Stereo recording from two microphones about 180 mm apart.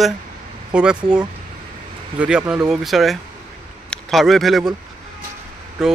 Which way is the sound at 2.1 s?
5° right (ahead or behind).